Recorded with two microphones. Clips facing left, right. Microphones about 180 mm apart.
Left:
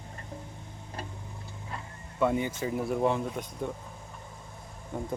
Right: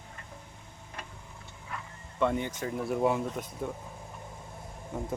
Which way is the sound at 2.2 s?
5° left (ahead or behind).